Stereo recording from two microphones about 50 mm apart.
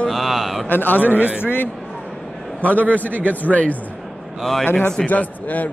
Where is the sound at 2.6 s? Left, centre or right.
Left.